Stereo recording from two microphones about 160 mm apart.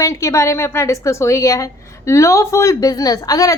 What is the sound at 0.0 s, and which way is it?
A woman's voice, 20° left (ahead or behind).